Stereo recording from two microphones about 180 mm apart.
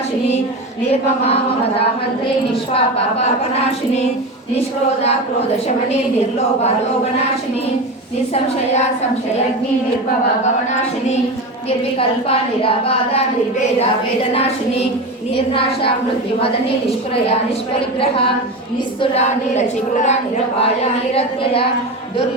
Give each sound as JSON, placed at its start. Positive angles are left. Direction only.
{"t": 11.9, "sound": "a woman's voice", "side_deg": 30}
{"t": 14.3, "sound": "a woman's voice", "side_deg": 35}
{"t": 19.1, "sound": "a woman's voice", "side_deg": 40}
{"t": 21.2, "sound": "a woman's voice", "side_deg": 30}